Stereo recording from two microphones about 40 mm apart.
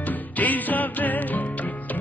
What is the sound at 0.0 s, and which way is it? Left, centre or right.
Music, left.